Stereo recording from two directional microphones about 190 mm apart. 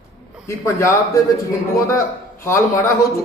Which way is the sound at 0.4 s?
15° left (ahead or behind).